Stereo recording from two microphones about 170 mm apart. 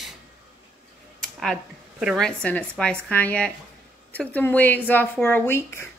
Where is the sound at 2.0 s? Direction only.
Centre (ahead or behind); by 5.9 s 15° left (ahead or behind).